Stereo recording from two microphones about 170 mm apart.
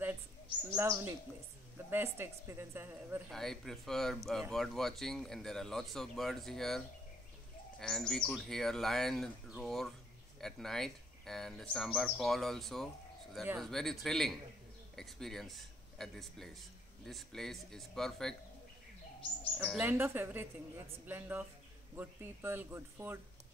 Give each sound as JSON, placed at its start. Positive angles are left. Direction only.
{"t": 0.7, "sound": "speech", "side_deg": -15}
{"t": 3.3, "sound": "speech", "side_deg": 0}
{"t": 7.8, "sound": "speech", "side_deg": 5}
{"t": 19.8, "sound": "speech", "side_deg": -10}